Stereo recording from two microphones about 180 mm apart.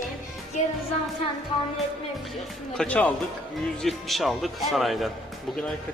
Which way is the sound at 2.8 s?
10° left (ahead or behind).